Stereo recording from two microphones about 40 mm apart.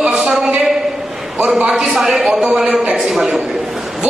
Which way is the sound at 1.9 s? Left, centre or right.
Centre.